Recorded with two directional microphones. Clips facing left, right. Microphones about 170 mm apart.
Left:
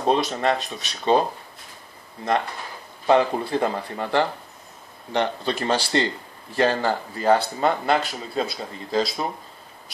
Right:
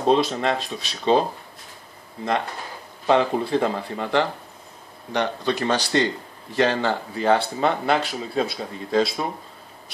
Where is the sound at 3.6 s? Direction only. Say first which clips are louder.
Right 1 dB; 5° left (ahead or behind).